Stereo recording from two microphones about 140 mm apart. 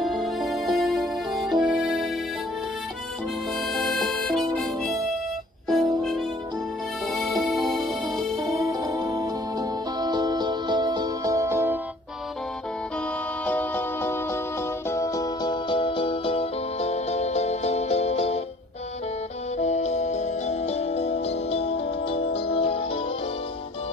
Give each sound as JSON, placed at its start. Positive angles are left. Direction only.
{"t": 0.0, "sound": "music", "side_deg": 0}
{"t": 3.7, "sound": "harmonica", "side_deg": 0}
{"t": 5.7, "sound": "music", "side_deg": 0}
{"t": 8.4, "sound": "music", "side_deg": -25}
{"t": 13.5, "sound": "music", "side_deg": 15}
{"t": 19.6, "sound": "music", "side_deg": 55}